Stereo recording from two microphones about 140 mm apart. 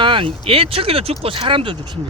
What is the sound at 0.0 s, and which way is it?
Speech, 35° right (ahead or behind).